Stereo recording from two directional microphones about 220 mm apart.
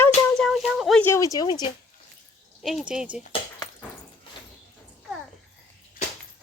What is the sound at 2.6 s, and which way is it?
Speech, centre (ahead or behind).